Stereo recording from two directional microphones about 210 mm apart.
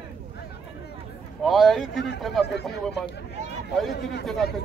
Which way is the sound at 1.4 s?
Centre (ahead or behind).